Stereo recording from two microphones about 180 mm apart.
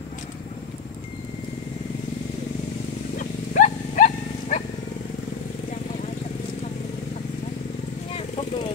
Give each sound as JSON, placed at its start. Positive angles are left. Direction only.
{"t": 3.2, "sound": "wild animals", "side_deg": 45}